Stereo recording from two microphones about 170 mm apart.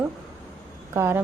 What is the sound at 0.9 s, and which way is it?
Speech, 15° right (ahead or behind).